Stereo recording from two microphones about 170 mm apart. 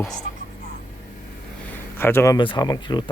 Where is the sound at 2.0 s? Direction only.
15° left (ahead or behind).